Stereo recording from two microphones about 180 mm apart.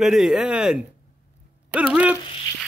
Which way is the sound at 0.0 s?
Centre (ahead or behind).